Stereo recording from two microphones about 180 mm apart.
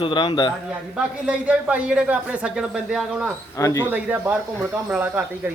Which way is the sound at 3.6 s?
15° left (ahead or behind).